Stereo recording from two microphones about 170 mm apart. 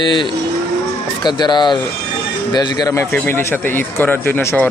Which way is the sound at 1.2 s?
25° left (ahead or behind).